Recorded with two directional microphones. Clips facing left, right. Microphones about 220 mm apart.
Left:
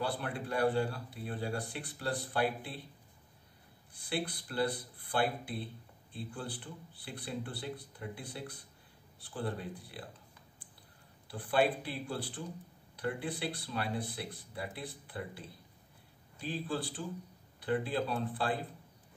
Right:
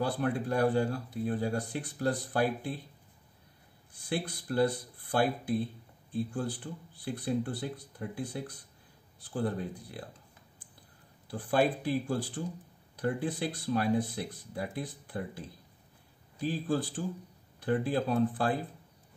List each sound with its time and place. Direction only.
0.0 s speech: 45° right (ahead or behind)
4.1 s speech: 45° right (ahead or behind)
11.2 s speech: 45° right (ahead or behind)
16.4 s speech: 45° right (ahead or behind)